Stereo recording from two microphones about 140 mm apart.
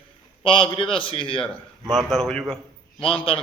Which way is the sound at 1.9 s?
Centre (ahead or behind).